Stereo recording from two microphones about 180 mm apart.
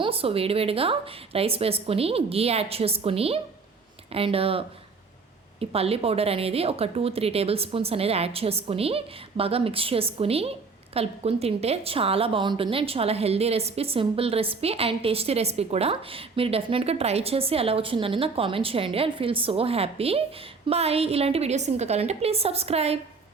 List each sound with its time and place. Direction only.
0.0 s speech: 30° right (ahead or behind)